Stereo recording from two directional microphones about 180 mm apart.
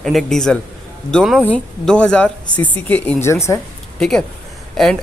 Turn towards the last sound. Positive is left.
turn(degrees=0)  # may be behind; listen again after turning